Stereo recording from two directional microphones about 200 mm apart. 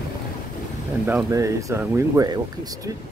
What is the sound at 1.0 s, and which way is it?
Speech, 10° right (ahead or behind).